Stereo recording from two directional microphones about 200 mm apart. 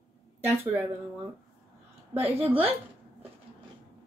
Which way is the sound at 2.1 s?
30° right (ahead or behind).